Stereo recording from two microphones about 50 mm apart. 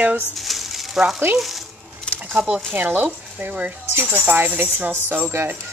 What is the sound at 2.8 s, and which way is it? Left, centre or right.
Speech, right.